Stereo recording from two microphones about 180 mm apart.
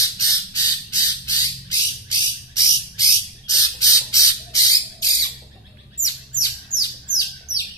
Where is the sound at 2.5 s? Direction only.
20° left (ahead or behind).